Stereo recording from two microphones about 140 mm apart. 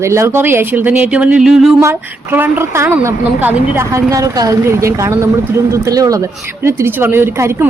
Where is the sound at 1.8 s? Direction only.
15° right (ahead or behind).